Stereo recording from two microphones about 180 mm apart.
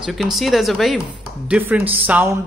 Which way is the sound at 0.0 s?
Centre (ahead or behind).